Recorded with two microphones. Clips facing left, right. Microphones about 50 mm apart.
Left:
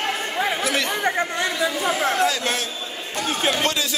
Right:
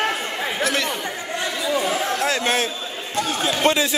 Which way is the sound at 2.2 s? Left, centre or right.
Right.